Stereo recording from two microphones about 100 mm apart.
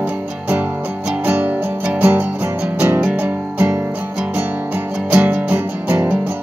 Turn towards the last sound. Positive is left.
turn(degrees=-20)  # may be behind; listen again after turning